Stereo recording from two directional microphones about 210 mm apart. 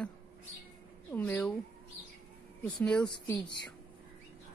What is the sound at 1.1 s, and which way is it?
Speech, 10° left (ahead or behind).